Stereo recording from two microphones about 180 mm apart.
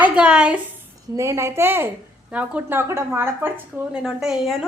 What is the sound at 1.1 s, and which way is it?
A woman's voice, 15° right (ahead or behind).